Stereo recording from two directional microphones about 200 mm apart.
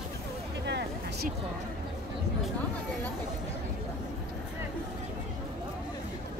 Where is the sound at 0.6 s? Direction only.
60° right (ahead or behind).